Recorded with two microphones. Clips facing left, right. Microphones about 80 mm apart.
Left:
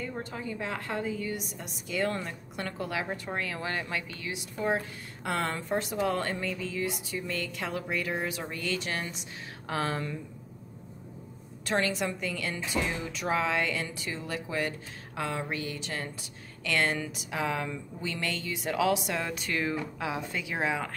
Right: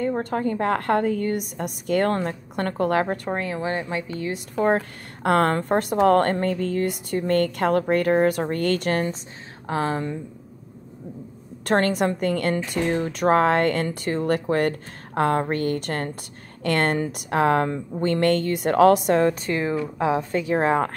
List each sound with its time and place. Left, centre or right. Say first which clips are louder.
0.0 s a woman's voice: right 13 dB; right
3.3 s speech: right 8 dB; right
4.1 s a woman's voice: right 10 dB; right
9.7 s a woman's voice: right 7 dB; right
11.6 s a woman's voice: right 8 dB; right
19.5 s a woman's voice: right 7 dB; right